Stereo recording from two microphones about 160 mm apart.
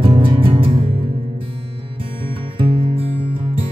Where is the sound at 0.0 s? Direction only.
30° right (ahead or behind).